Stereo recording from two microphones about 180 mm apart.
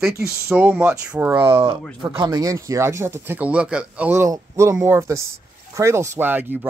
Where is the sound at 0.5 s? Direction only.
10° right (ahead or behind).